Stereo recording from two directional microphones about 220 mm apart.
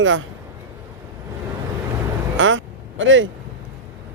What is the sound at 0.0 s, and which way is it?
Speech, 65° right (ahead or behind).